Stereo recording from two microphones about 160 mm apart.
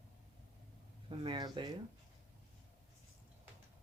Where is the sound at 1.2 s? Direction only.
30° right (ahead or behind).